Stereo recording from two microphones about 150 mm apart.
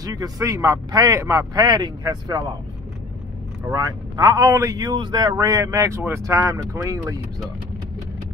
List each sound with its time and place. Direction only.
0.0 s speech: 25° right (ahead or behind)
3.6 s speech: 25° right (ahead or behind)